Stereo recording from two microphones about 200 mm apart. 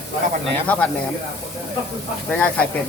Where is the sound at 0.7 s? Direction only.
10° left (ahead or behind).